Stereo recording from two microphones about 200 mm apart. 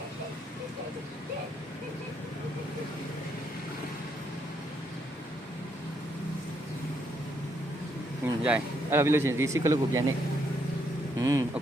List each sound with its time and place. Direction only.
8.2 s speech: 10° right (ahead or behind)
11.2 s speech: 15° right (ahead or behind)